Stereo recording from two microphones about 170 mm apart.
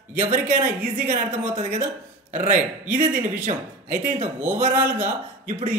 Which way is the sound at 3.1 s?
10° right (ahead or behind).